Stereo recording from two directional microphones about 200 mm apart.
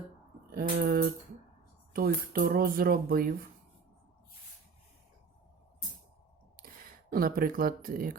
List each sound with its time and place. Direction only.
0.5 s speech: 50° right (ahead or behind)
7.1 s speech: 45° right (ahead or behind)